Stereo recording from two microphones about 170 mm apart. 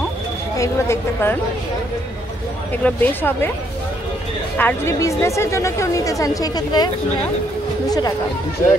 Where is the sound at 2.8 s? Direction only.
10° left (ahead or behind).